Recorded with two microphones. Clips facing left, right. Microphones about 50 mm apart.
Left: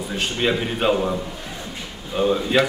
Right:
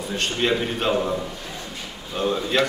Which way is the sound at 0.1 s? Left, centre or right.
Centre.